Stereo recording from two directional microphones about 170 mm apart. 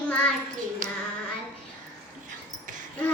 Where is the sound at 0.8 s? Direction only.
55° right (ahead or behind).